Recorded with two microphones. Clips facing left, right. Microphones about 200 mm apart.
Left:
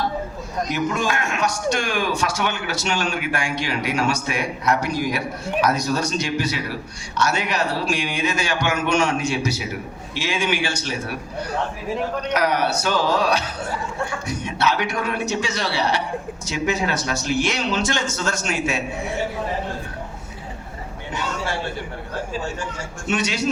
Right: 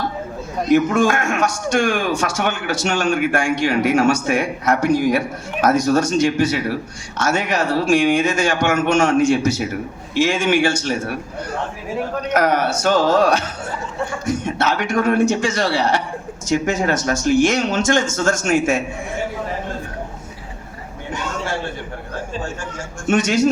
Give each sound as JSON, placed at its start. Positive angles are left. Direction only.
{"t": 0.7, "sound": "a man's voice", "side_deg": -50}
{"t": 12.3, "sound": "a man's voice", "side_deg": -50}
{"t": 23.0, "sound": "a man's voice", "side_deg": -45}